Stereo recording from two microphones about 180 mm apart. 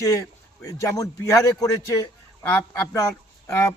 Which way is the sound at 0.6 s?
15° left (ahead or behind).